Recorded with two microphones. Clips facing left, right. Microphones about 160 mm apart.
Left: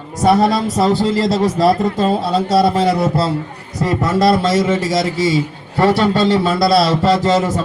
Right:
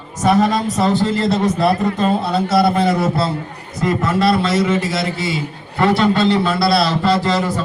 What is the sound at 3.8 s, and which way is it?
A man's voice, 40° left (ahead or behind).